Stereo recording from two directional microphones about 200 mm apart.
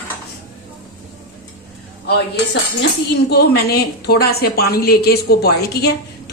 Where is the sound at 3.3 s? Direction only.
50° left (ahead or behind).